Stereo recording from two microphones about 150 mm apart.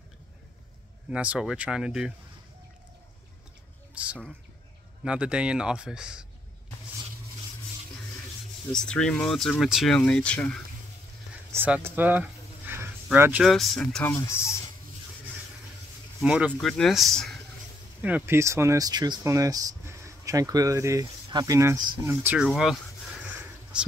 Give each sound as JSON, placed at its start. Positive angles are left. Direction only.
{"t": 1.1, "sound": "speech", "side_deg": -10}
{"t": 3.9, "sound": "a sound", "side_deg": -10}
{"t": 5.0, "sound": "speech", "side_deg": -5}
{"t": 8.7, "sound": "speech", "side_deg": 5}
{"t": 11.5, "sound": "a sound", "side_deg": -15}
{"t": 13.5, "sound": "speech", "side_deg": 5}
{"t": 14.1, "sound": "speech", "side_deg": 15}
{"t": 16.2, "sound": "speech", "side_deg": -5}
{"t": 16.5, "sound": "speech", "side_deg": 5}
{"t": 18.0, "sound": "speech", "side_deg": -15}
{"t": 22.5, "sound": "speech", "side_deg": 0}
{"t": 23.2, "sound": "a sound", "side_deg": -10}